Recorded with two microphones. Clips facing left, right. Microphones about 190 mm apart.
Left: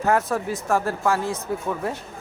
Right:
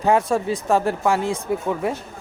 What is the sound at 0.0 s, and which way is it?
Speech, 15° right (ahead or behind).